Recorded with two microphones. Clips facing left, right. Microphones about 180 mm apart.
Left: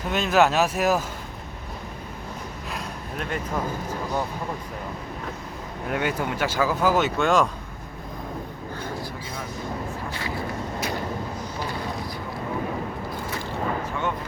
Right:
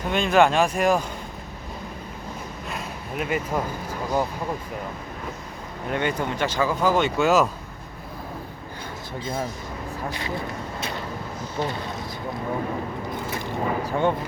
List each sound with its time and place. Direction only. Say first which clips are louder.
0.1 s speech: right 1 dB; 5° left (ahead or behind)
2.6 s speech: right 1 dB; 5° right (ahead or behind)
5.9 s speech: right 1 dB; 5° left (ahead or behind)
10.1 s speech: right 1 dB; 20° right (ahead or behind)
13.8 s speech: right 6 dB; 35° right (ahead or behind)